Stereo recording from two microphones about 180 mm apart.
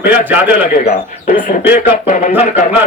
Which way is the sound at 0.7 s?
45° left (ahead or behind).